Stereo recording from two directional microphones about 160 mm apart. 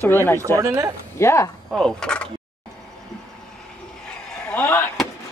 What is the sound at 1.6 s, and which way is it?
Speech, 5° left (ahead or behind).